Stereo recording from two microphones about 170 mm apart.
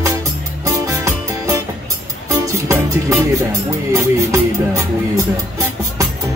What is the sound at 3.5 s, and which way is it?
Speech, 20° right (ahead or behind).